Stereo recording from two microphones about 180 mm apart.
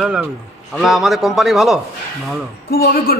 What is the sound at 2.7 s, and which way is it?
Speech, 55° left (ahead or behind).